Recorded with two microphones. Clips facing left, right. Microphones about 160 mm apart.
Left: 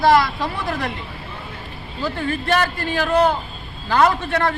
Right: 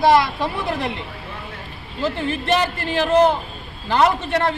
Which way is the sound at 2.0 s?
20° right (ahead or behind).